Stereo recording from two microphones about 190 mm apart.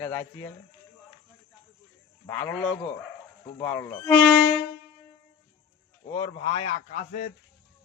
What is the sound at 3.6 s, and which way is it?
Speech, 15° left (ahead or behind).